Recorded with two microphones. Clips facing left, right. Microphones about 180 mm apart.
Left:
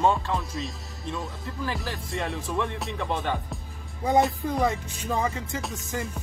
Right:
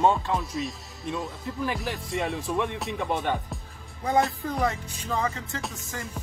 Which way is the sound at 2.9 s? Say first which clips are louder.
Right 1 dB; 15° right (ahead or behind).